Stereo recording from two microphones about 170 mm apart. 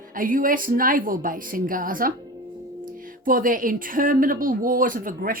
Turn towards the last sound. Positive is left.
turn(degrees=-55)  # may be behind; listen again after turning